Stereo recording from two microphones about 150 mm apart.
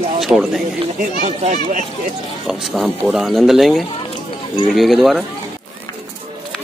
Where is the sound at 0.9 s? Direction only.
50° right (ahead or behind).